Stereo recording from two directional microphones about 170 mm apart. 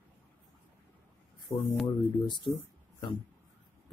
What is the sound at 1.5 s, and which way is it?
Speech, centre (ahead or behind).